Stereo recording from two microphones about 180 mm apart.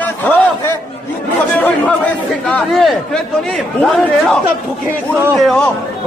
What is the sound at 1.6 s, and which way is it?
A man's voice, 5° left (ahead or behind).